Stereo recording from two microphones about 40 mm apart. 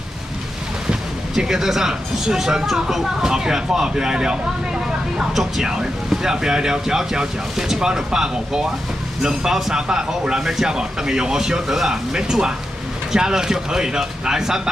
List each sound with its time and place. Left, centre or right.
1.3 s speech: centre
3.3 s speech: centre
5.3 s speech: centre